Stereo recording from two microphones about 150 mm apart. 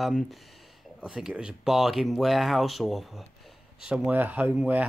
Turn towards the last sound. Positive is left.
turn(degrees=-10)  # may be behind; listen again after turning